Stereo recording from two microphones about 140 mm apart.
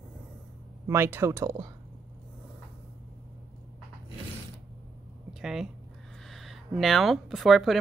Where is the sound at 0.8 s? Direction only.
15° right (ahead or behind).